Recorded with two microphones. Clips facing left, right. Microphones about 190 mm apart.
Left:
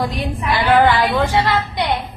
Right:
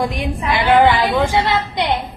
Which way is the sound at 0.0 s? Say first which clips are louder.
Right 1 dB; 20° right (ahead or behind).